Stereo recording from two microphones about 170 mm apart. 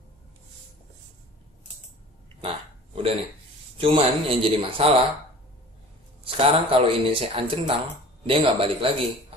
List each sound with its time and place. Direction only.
2.4 s a sound: 35° right (ahead or behind)
3.7 s speech: 35° right (ahead or behind)
6.2 s speech: 30° right (ahead or behind)